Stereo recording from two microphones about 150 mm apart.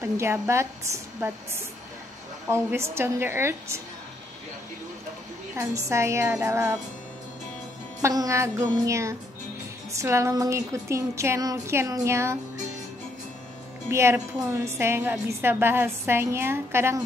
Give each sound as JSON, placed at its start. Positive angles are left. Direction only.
{"t": 0.0, "sound": "a woman's voice", "side_deg": -15}
{"t": 2.5, "sound": "a woman's voice", "side_deg": -15}
{"t": 5.6, "sound": "music", "side_deg": -20}
{"t": 8.0, "sound": "music", "side_deg": -20}
{"t": 13.8, "sound": "a woman's voice", "side_deg": -15}